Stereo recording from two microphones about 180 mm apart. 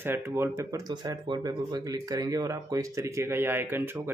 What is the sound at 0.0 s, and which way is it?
Speech, 10° right (ahead or behind).